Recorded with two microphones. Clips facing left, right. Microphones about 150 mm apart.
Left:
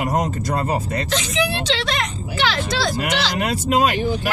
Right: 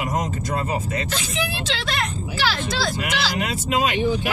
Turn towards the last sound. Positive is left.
turn(degrees=40)  # may be behind; listen again after turning